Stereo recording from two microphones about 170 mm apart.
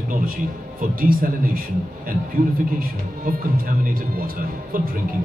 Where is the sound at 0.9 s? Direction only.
55° right (ahead or behind).